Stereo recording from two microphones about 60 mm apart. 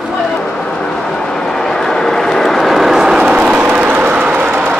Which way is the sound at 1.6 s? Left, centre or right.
Centre.